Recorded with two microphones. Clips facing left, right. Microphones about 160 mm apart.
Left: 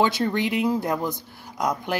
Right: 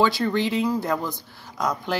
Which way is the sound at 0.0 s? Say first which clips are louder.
Right 1 dB; 20° left (ahead or behind).